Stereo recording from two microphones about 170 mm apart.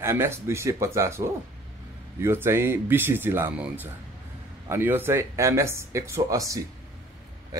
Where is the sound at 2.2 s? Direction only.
15° right (ahead or behind).